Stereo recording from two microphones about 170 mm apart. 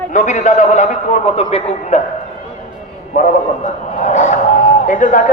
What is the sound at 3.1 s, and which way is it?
A man's voice, 50° left (ahead or behind).